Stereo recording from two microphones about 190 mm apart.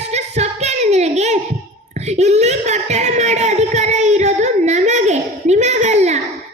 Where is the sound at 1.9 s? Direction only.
35° right (ahead or behind).